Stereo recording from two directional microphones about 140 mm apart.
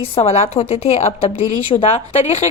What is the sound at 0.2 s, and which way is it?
A woman's voice, 45° left (ahead or behind).